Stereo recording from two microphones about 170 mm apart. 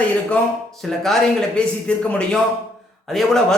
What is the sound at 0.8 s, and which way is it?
A man's voice, centre (ahead or behind).